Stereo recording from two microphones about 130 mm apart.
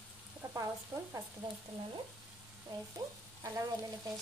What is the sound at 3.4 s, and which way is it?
Frying, 25° right (ahead or behind).